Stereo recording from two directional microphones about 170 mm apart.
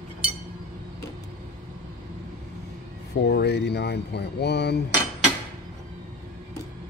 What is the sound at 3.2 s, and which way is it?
Speech, 75° left (ahead or behind).